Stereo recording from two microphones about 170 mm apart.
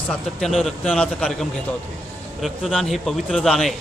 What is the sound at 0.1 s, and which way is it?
A man's voice, centre (ahead or behind).